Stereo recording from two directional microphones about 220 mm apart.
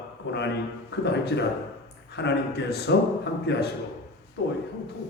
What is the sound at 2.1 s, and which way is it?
Speech, 50° left (ahead or behind).